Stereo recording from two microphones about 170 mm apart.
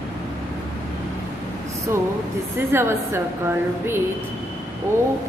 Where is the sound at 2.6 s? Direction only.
15° right (ahead or behind).